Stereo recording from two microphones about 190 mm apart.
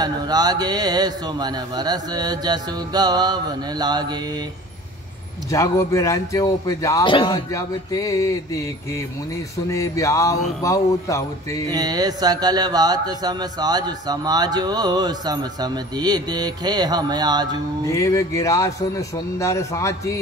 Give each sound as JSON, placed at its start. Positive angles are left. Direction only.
{"t": 0.0, "sound": "speech", "side_deg": -20}
{"t": 5.5, "sound": "speech", "side_deg": 15}
{"t": 9.7, "sound": "speech", "side_deg": 15}
{"t": 11.7, "sound": "speech", "side_deg": -20}
{"t": 17.8, "sound": "speech", "side_deg": 15}